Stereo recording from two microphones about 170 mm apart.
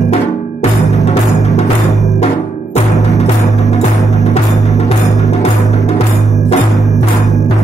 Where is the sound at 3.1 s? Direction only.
40° left (ahead or behind).